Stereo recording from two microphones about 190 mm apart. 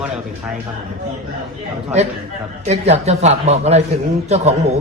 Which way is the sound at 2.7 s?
35° right (ahead or behind).